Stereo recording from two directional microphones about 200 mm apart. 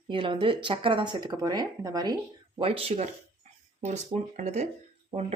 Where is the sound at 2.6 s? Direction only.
30° right (ahead or behind).